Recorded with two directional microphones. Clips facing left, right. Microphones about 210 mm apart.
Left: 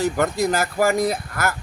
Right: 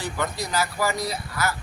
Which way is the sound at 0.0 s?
45° left (ahead or behind).